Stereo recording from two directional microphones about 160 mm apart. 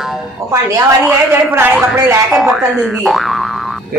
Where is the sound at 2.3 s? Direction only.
Centre (ahead or behind).